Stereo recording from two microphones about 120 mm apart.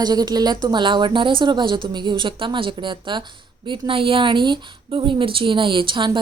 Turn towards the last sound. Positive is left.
turn(degrees=-40)  # may be behind; listen again after turning